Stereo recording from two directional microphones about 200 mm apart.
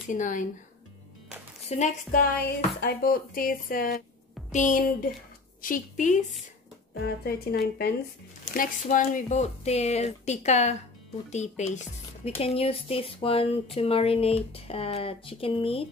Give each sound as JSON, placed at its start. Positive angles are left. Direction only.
{"t": 0.1, "sound": "speech", "side_deg": 40}
{"t": 1.7, "sound": "speech", "side_deg": 35}
{"t": 2.3, "sound": "speech", "side_deg": 50}
{"t": 7.2, "sound": "speech", "side_deg": 50}
{"t": 8.5, "sound": "speech", "side_deg": 40}